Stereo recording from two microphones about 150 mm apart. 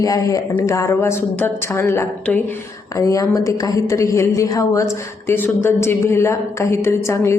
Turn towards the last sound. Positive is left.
turn(degrees=20)  # may be behind; listen again after turning